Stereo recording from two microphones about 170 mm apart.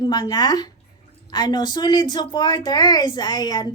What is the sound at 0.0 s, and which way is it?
A woman's voice, 25° left (ahead or behind).